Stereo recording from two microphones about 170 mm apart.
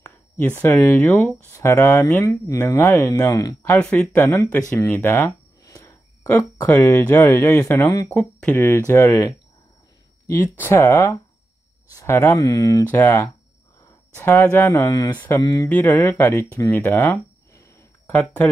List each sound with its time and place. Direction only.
0.6 s speech: 10° left (ahead or behind)
3.7 s speech: 5° left (ahead or behind)
8.1 s speech: 5° left (ahead or behind)
15.4 s speech: 20° left (ahead or behind)
15.7 s speech: 10° left (ahead or behind)